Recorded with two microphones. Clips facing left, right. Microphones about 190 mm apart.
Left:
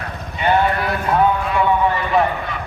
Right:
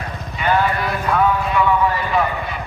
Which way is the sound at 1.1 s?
25° left (ahead or behind).